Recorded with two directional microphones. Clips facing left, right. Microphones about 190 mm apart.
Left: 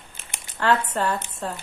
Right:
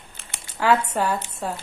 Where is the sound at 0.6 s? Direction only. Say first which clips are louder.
Right 2 dB; 10° right (ahead or behind).